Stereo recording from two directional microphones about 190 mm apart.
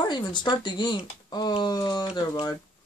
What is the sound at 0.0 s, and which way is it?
Speech, 25° left (ahead or behind).